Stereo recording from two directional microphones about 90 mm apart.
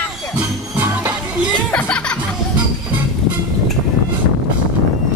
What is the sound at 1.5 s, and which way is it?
Music, 10° left (ahead or behind).